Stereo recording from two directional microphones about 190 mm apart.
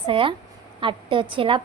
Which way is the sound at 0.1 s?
25° right (ahead or behind).